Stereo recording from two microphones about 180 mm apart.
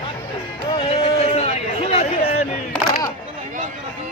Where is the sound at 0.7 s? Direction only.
30° left (ahead or behind).